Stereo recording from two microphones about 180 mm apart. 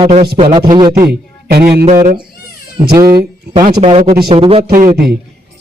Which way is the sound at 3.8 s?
30° right (ahead or behind).